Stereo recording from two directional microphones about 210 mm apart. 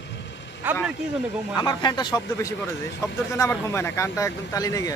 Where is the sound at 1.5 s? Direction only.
20° left (ahead or behind).